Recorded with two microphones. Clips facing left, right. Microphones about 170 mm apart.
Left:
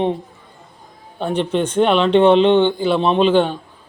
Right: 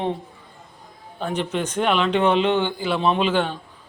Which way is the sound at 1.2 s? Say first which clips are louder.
Left 6 dB; 30° left (ahead or behind).